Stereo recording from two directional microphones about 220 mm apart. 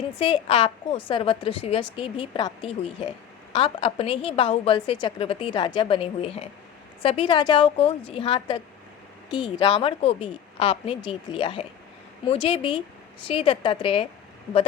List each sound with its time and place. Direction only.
0.2 s a woman's voice: 25° left (ahead or behind)